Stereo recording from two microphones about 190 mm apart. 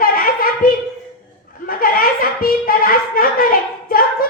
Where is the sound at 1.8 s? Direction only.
50° left (ahead or behind).